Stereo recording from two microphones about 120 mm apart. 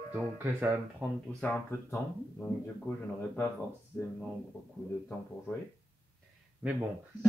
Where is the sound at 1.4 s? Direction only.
10° left (ahead or behind).